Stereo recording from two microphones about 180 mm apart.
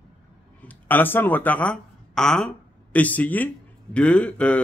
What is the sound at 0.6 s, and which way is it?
Speech, 10° left (ahead or behind).